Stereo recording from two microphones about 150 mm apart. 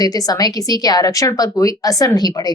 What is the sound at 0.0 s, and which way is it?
A woman's voice, 25° left (ahead or behind).